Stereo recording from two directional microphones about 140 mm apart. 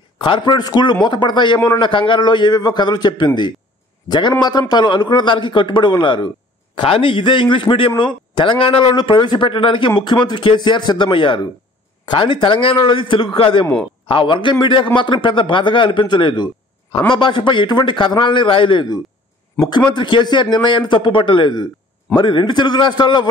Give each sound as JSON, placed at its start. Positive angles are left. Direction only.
{"t": 0.2, "sound": "speech", "side_deg": 35}